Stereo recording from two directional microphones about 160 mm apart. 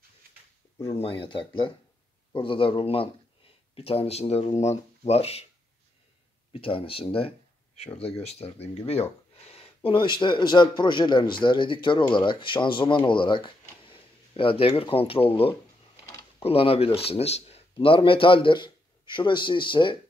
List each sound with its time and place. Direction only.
0.9 s speech: 35° left (ahead or behind)
6.5 s speech: 35° left (ahead or behind)
16.1 s a sound: 20° left (ahead or behind)
16.4 s speech: 35° left (ahead or behind)